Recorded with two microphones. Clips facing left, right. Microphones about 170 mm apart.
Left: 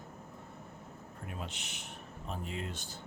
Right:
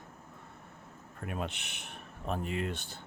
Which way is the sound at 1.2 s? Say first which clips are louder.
Right 7 dB; 65° right (ahead or behind).